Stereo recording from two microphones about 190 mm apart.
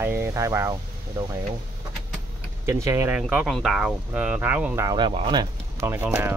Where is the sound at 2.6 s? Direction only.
15° right (ahead or behind).